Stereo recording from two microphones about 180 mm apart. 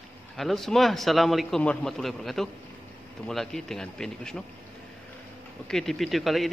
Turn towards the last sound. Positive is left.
turn(degrees=0)  # may be behind; listen again after turning